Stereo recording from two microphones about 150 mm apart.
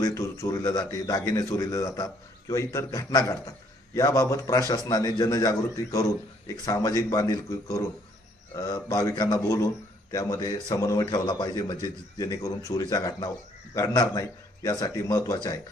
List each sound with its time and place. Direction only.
0.0 s a man's voice: 20° left (ahead or behind)